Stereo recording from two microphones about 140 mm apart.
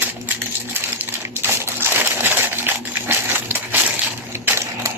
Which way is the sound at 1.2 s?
15° right (ahead or behind).